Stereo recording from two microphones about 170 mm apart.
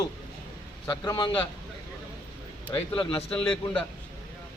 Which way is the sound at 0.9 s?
25° left (ahead or behind).